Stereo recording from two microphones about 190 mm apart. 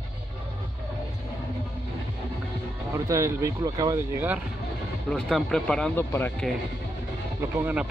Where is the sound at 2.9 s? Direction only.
15° right (ahead or behind).